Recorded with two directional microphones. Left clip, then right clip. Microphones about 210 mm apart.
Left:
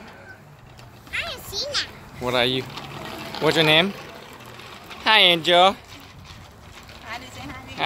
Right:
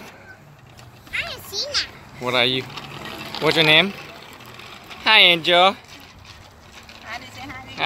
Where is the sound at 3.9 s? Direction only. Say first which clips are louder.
Right 1 dB; 40° right (ahead or behind).